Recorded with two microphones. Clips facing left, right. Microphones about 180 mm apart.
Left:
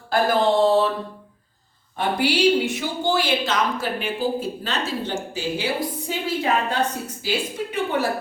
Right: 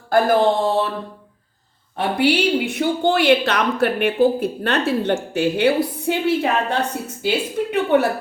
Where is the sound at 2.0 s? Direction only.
60° right (ahead or behind).